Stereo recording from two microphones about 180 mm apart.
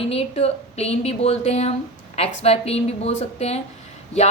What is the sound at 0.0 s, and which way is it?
A woman's voice, 35° left (ahead or behind).